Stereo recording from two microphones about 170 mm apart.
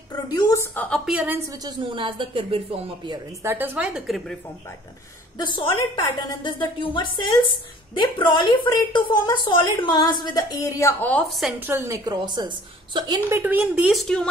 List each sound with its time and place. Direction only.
0.1 s a sound: 20° left (ahead or behind)
0.8 s a woman's voice: 5° left (ahead or behind)
1.1 s a woman's voice: 10° right (ahead or behind)
1.6 s speech: 30° right (ahead or behind)
3.4 s a woman's voice: 10° right (ahead or behind)
5.5 s a woman's voice: 30° left (ahead or behind); by 11.5 s centre (ahead or behind)
11.6 s a woman's voice: 15° right (ahead or behind); by 14.2 s centre (ahead or behind)